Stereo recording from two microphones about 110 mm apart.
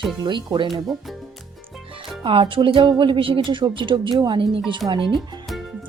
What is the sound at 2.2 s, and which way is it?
Speech, 50° right (ahead or behind).